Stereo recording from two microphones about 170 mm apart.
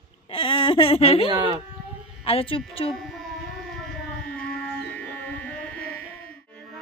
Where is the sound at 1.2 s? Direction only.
30° right (ahead or behind).